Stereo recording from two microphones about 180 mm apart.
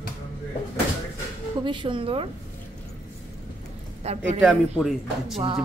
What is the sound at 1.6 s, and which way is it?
Speech, 25° right (ahead or behind).